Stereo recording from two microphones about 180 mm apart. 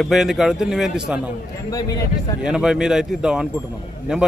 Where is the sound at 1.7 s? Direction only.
20° left (ahead or behind).